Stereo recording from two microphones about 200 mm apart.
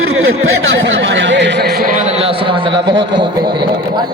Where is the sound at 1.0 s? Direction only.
65° right (ahead or behind).